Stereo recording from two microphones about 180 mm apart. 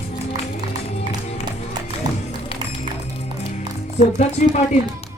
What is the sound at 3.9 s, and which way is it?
Speech, 40° left (ahead or behind).